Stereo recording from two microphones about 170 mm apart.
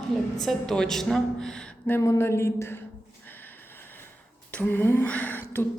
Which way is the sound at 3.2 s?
10° left (ahead or behind).